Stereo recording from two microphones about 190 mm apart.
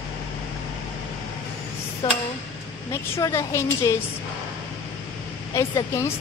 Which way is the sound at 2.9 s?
15° left (ahead or behind).